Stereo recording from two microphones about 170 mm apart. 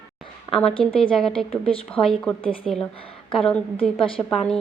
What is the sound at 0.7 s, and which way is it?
Speech, 30° left (ahead or behind).